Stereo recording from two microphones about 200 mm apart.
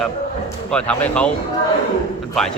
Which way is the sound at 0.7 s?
5° left (ahead or behind).